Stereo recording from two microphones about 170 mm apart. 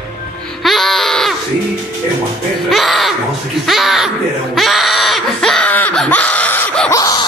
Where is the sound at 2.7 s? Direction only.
Centre (ahead or behind).